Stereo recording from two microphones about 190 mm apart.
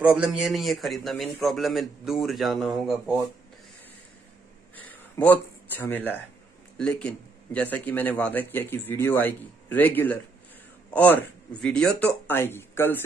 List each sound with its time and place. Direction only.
0.0 s a man's voice: 5° right (ahead or behind)
4.7 s a man's voice: 10° left (ahead or behind)